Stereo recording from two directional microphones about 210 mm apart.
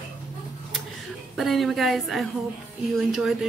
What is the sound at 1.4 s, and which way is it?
A woman's voice, centre (ahead or behind).